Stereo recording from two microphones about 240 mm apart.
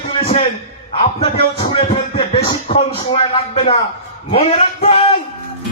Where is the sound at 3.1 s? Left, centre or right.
Left.